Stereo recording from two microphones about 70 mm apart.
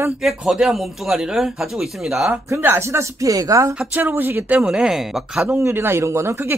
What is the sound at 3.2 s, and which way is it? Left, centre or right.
Speech, right.